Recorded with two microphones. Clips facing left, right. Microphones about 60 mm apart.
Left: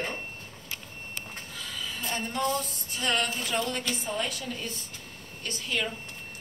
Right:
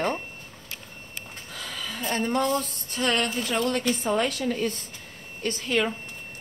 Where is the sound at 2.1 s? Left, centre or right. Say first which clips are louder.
Right 5 dB; right.